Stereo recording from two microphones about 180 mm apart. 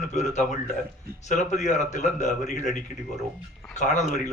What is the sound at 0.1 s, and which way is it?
A man's voice, 40° left (ahead or behind).